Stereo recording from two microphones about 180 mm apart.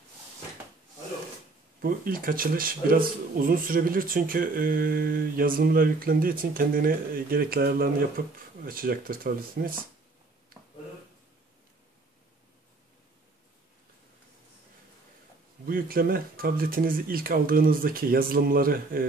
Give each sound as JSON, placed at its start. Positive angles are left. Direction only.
{"t": 1.8, "sound": "speech", "side_deg": -50}
{"t": 15.6, "sound": "speech", "side_deg": -55}